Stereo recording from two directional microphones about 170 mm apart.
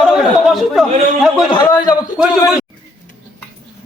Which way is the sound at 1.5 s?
25° left (ahead or behind).